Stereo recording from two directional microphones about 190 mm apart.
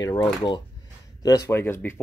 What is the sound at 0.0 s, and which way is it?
Speech, 20° left (ahead or behind).